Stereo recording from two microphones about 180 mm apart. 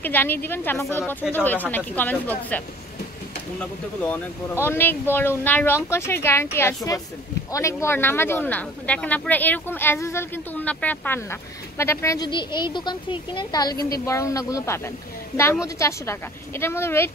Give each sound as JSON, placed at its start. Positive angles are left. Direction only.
{"t": 0.0, "sound": "a woman's voice", "side_deg": 10}